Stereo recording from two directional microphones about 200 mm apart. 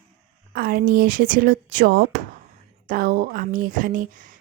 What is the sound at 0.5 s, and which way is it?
Speech, 50° right (ahead or behind).